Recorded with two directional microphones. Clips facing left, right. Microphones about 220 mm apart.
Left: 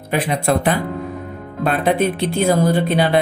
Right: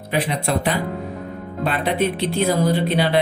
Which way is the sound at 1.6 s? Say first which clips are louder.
Left 4 dB; 50° left (ahead or behind).